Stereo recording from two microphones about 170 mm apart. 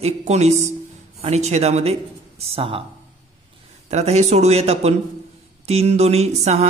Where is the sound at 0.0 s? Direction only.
40° right (ahead or behind).